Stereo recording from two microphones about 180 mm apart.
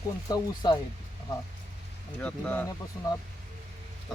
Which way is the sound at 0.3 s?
25° left (ahead or behind).